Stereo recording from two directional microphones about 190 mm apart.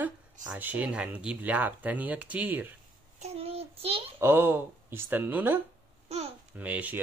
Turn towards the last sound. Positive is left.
turn(degrees=-10)  # may be behind; listen again after turning